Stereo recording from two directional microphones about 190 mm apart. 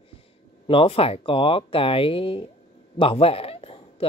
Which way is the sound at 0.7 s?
30° left (ahead or behind).